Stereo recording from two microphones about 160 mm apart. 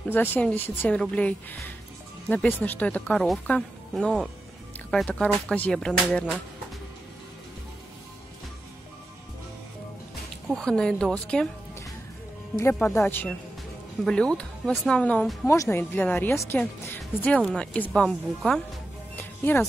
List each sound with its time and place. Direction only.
0.0 s speech: 10° left (ahead or behind)
10.5 s speech: 5° left (ahead or behind)
12.5 s speech: 15° left (ahead or behind)
19.1 s music: 10° left (ahead or behind)